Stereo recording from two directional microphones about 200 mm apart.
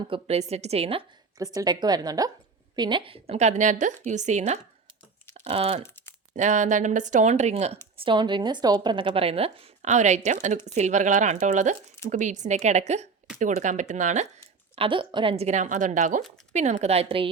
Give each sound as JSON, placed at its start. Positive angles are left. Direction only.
{"t": 0.1, "sound": "a woman's voice", "side_deg": -30}
{"t": 14.8, "sound": "speech", "side_deg": -25}